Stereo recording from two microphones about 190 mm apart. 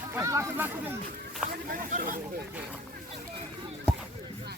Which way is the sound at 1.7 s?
45° right (ahead or behind).